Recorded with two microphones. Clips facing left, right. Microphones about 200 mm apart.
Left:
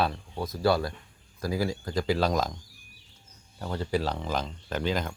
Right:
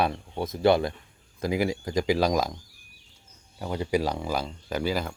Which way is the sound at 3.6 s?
15° right (ahead or behind).